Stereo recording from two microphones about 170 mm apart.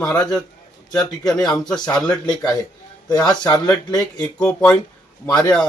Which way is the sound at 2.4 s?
20° left (ahead or behind).